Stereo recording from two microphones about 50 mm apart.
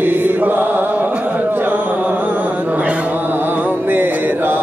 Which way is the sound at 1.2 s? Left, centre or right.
Right.